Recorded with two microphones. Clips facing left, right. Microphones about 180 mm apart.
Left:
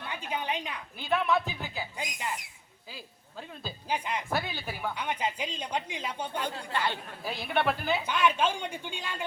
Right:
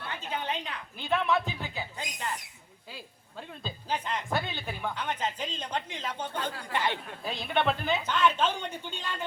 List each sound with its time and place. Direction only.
0.0 s speech: 15° left (ahead or behind)
3.6 s speech: 10° left (ahead or behind)
6.7 s speech: 20° right (ahead or behind)
7.3 s speech: 5° left (ahead or behind)